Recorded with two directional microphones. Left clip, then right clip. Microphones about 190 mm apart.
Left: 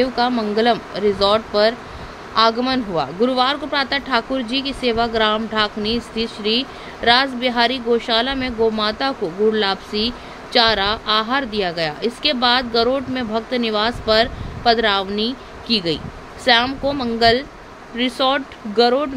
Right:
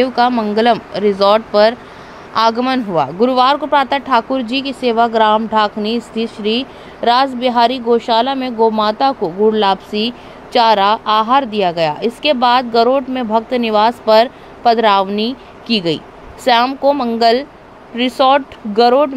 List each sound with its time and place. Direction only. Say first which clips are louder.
0.0 s speech: right 5 dB; 20° right (ahead or behind)